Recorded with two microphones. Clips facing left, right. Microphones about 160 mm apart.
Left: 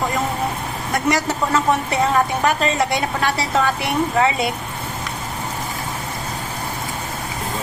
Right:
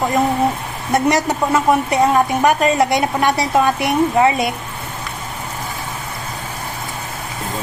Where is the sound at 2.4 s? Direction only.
15° right (ahead or behind).